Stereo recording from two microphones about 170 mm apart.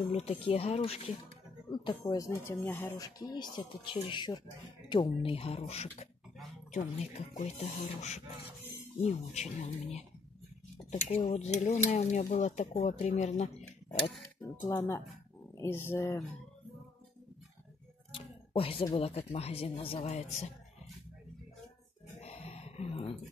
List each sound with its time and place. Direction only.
0.1 s speech: 35° left (ahead or behind)
11.2 s dishes: 45° left (ahead or behind)
12.8 s speech: 45° left (ahead or behind)
14.6 s speech: 20° left (ahead or behind)
18.1 s speech: 30° left (ahead or behind)
22.2 s a sound: 35° left (ahead or behind)